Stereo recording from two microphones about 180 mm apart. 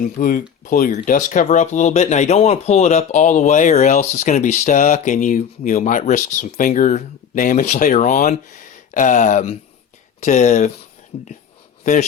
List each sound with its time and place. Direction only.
0.0 s speech: 50° left (ahead or behind)